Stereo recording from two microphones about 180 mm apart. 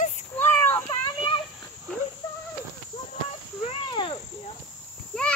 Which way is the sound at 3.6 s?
30° left (ahead or behind).